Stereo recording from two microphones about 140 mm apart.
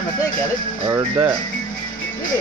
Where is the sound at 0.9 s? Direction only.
15° right (ahead or behind).